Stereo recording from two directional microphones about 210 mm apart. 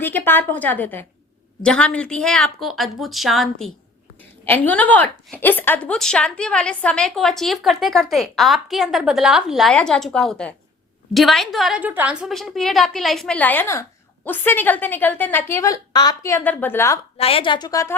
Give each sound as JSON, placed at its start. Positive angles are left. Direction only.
{"t": 0.0, "sound": "a woman's voice", "side_deg": 10}
{"t": 17.2, "sound": "a woman's voice", "side_deg": 25}